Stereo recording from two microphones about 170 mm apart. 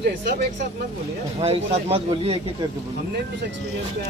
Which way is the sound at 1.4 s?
35° right (ahead or behind).